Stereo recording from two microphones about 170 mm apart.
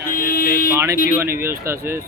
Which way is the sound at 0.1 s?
55° left (ahead or behind).